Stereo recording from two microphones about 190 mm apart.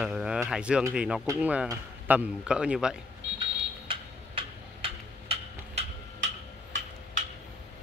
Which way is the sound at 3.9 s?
30° right (ahead or behind).